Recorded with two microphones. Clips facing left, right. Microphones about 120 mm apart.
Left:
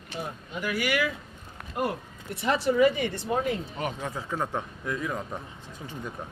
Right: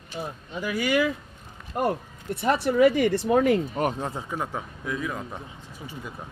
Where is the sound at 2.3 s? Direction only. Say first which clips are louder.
Right 2 dB; 50° right (ahead or behind); by 3.6 s 90° right.